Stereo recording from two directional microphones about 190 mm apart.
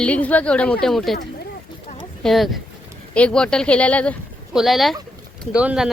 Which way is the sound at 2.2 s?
Centre (ahead or behind).